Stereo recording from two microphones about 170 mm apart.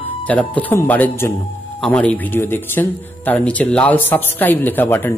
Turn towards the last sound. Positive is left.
turn(degrees=10)  # may be behind; listen again after turning